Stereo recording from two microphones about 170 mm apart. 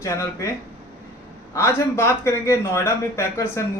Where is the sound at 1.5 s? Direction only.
15° left (ahead or behind).